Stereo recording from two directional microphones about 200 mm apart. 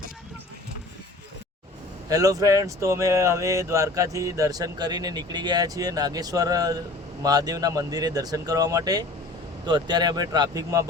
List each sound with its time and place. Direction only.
2.0 s speech: 15° right (ahead or behind)